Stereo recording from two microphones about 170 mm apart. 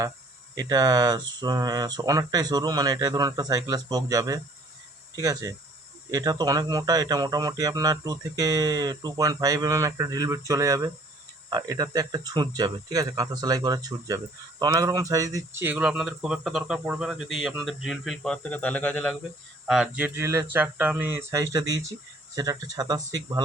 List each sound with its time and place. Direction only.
0.5 s speech: 25° right (ahead or behind); by 19.1 s 5° left (ahead or behind)
19.6 s speech: 5° right (ahead or behind); by 23.4 s 20° right (ahead or behind)